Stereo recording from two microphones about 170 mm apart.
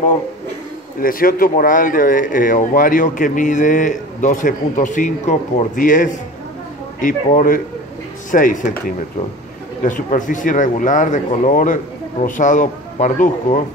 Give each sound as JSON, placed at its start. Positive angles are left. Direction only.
{"t": 1.0, "sound": "speech", "side_deg": 55}